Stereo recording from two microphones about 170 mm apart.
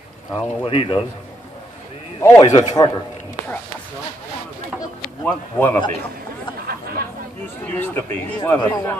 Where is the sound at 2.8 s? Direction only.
20° left (ahead or behind).